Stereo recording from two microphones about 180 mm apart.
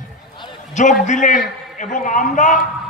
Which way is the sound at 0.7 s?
45° left (ahead or behind).